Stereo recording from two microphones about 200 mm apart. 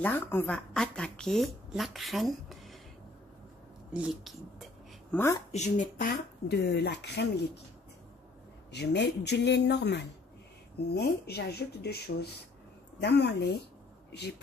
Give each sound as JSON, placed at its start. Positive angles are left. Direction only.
{"t": 0.0, "sound": "speech", "side_deg": 10}
{"t": 3.9, "sound": "speech", "side_deg": -5}
{"t": 5.1, "sound": "a woman's voice", "side_deg": 10}
{"t": 5.5, "sound": "speech", "side_deg": 35}
{"t": 8.7, "sound": "speech", "side_deg": 60}